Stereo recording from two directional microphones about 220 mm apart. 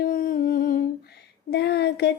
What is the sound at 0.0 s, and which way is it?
Humming, 40° left (ahead or behind).